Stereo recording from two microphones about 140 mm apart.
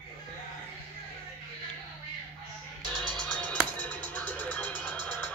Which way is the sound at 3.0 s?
5° left (ahead or behind).